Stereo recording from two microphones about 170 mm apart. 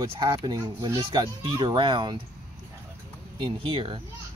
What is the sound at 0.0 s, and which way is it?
Speech, 30° right (ahead or behind).